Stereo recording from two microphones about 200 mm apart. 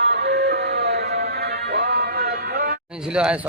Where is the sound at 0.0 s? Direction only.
55° right (ahead or behind).